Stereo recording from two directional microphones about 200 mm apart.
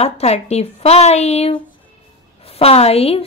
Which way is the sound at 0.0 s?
30° left (ahead or behind).